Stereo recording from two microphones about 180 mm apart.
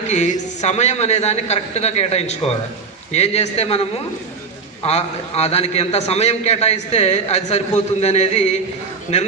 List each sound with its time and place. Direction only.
0.1 s a man's voice: 40° left (ahead or behind)